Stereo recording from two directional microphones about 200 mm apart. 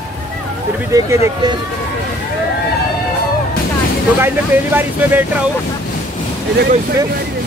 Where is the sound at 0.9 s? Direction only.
15° right (ahead or behind).